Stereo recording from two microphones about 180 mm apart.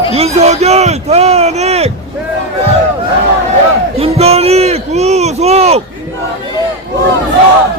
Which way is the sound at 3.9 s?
35° right (ahead or behind).